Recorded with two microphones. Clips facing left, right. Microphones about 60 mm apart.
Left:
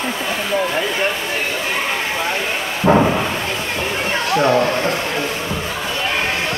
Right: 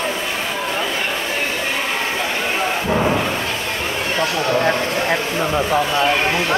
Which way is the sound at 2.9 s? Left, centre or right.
Left.